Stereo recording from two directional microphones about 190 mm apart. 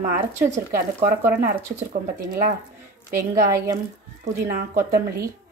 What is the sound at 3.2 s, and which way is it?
Speech, 15° right (ahead or behind).